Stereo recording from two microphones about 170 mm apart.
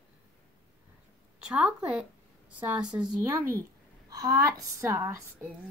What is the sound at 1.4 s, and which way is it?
A woman's voice, 5° right (ahead or behind).